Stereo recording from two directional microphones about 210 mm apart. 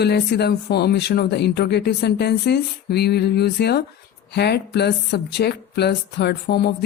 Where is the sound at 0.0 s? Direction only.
50° left (ahead or behind).